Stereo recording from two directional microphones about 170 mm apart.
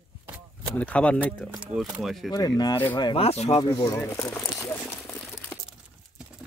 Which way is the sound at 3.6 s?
20° left (ahead or behind).